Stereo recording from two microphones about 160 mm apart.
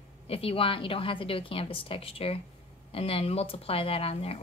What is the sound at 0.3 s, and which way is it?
A woman's voice, 35° left (ahead or behind).